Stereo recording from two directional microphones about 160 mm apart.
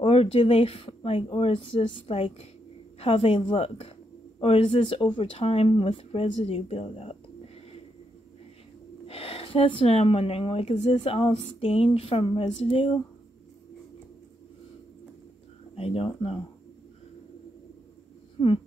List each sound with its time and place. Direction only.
0.0 s speech: 35° left (ahead or behind)
9.0 s speech: 35° left (ahead or behind)
15.7 s speech: 35° left (ahead or behind)